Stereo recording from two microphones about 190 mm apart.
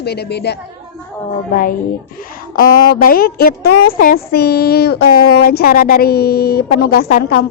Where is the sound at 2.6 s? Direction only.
50° left (ahead or behind).